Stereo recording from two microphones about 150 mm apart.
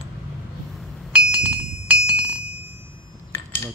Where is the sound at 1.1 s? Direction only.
10° right (ahead or behind).